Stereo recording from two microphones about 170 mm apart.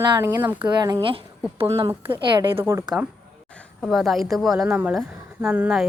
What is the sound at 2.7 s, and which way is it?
Speech, 15° right (ahead or behind).